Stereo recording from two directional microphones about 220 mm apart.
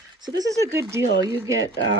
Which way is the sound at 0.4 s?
15° right (ahead or behind).